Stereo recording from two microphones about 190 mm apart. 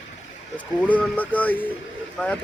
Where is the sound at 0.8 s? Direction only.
10° left (ahead or behind).